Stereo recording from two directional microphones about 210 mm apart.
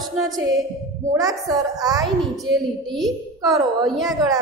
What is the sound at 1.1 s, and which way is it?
Speech, 15° right (ahead or behind).